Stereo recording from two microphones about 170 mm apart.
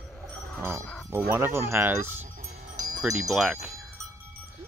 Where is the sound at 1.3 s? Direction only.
15° right (ahead or behind).